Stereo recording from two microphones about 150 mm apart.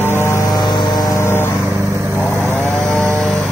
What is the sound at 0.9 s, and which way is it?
Vehicle, 20° left (ahead or behind).